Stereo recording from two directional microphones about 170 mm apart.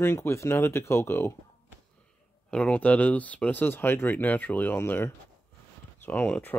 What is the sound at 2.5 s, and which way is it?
Speech, 5° left (ahead or behind).